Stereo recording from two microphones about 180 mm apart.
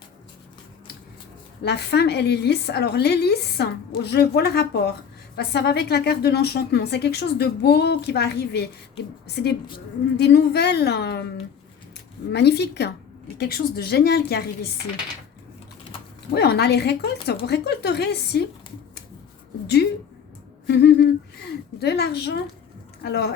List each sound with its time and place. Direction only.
1.6 s a woman's voice: 65° left (ahead or behind)
12.3 s a woman's voice: 70° left (ahead or behind)
16.3 s a woman's voice: 65° left (ahead or behind)
19.6 s a woman's voice: 65° left (ahead or behind)